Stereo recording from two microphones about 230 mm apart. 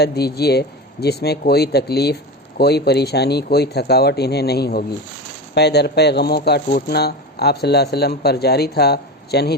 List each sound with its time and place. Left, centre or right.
0.0 s speech: left